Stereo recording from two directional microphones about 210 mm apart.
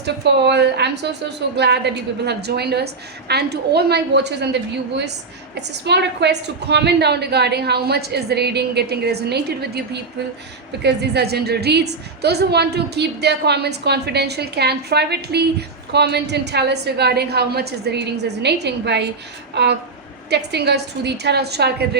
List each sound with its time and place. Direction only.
0.0 s a woman's voice: 55° right (ahead or behind)